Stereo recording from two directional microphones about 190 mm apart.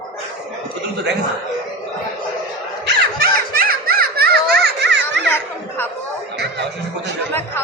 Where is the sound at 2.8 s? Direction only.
50° right (ahead or behind).